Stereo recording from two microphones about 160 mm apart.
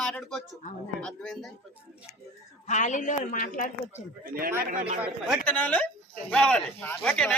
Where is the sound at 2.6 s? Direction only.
50° left (ahead or behind).